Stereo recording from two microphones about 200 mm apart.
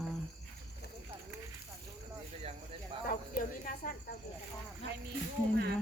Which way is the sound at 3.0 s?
45° left (ahead or behind).